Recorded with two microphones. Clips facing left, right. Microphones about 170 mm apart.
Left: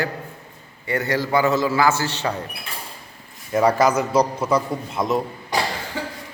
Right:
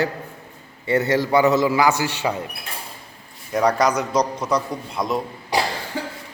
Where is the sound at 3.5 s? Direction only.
5° left (ahead or behind).